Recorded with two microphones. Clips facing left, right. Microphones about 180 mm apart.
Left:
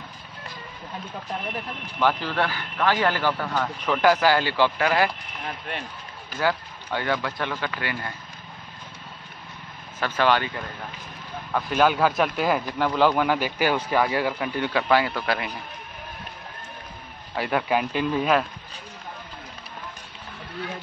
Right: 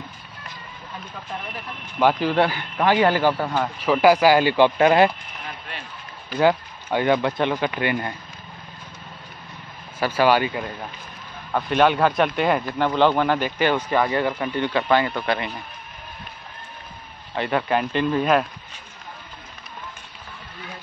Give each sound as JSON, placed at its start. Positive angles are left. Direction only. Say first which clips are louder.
{"t": 2.0, "sound": "a man's voice", "louder": "right 5 dB", "side_deg": -15}
{"t": 6.3, "sound": "speech", "louder": "right 6 dB", "side_deg": -20}
{"t": 9.9, "sound": "a man's voice", "louder": "right 4 dB", "side_deg": -10}
{"t": 11.7, "sound": "speech", "louder": "right 2 dB", "side_deg": 5}
{"t": 17.4, "sound": "speech", "louder": "right 2 dB", "side_deg": 5}